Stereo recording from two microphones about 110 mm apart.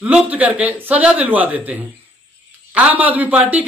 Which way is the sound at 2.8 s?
15° right (ahead or behind).